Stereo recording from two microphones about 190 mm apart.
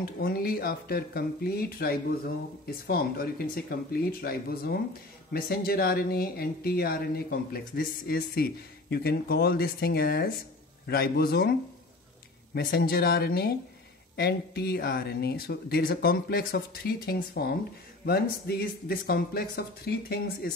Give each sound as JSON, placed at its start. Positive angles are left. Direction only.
{"t": 0.0, "sound": "speech", "side_deg": 50}
{"t": 12.5, "sound": "speech", "side_deg": 55}